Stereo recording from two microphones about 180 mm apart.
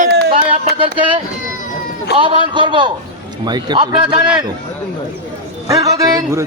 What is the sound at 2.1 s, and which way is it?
A man's voice, 25° right (ahead or behind).